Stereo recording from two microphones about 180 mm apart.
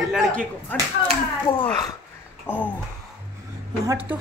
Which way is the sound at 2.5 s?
10° left (ahead or behind).